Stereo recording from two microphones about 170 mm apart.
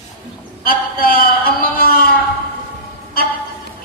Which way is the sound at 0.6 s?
60° left (ahead or behind).